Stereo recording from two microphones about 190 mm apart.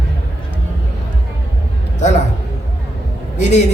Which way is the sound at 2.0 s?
40° left (ahead or behind).